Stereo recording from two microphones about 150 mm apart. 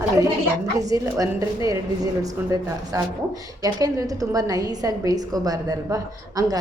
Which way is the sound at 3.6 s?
25° right (ahead or behind).